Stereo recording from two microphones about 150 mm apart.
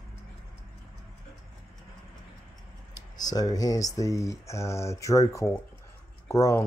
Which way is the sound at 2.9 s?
25° left (ahead or behind).